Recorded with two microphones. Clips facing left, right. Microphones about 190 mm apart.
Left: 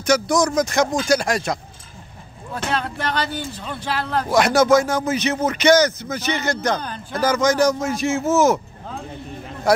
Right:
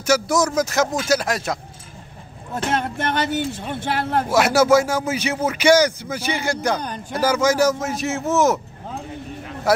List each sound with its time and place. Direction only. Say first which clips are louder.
0.0 s speech: left 1 dB; 5° right (ahead or behind)
2.5 s speech: right 2 dB; 25° right (ahead or behind)
4.3 s a man's voice: left 1 dB; 5° right (ahead or behind)
9.7 s a sound: left 1 dB; 5° right (ahead or behind)